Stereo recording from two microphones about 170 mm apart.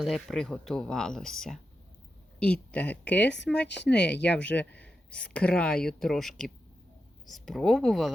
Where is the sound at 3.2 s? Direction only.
90° left.